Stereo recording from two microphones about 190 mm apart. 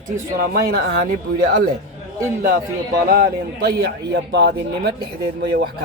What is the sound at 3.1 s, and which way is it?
A man's voice, 50° right (ahead or behind).